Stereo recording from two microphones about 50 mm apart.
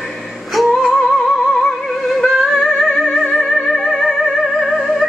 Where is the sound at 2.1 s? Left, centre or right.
Centre.